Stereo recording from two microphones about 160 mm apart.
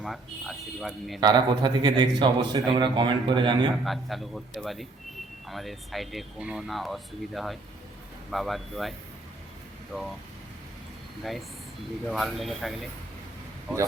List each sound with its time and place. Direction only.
0.0 s speech: centre (ahead or behind)
1.2 s a man's voice: 25° right (ahead or behind)
3.8 s speech: centre (ahead or behind)
9.9 s speech: centre (ahead or behind)
11.2 s speech: centre (ahead or behind)